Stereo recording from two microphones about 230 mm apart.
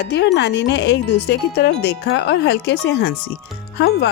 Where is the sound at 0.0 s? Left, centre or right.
Left.